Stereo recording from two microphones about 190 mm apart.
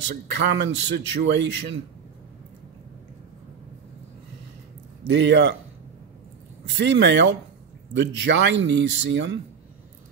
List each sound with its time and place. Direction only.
0.1 s speech: 65° right (ahead or behind)
5.0 s a man's voice: 70° right (ahead or behind)
6.9 s a man's voice: 65° right (ahead or behind)